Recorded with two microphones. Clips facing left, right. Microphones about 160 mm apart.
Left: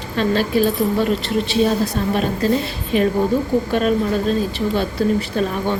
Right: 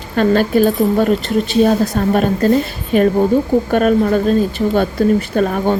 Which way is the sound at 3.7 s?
50° right (ahead or behind).